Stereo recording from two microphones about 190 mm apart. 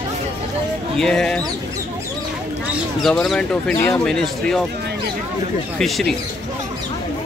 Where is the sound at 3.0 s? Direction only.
Centre (ahead or behind).